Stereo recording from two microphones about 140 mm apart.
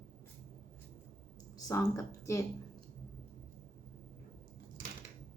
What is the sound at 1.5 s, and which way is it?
Speech, 25° left (ahead or behind).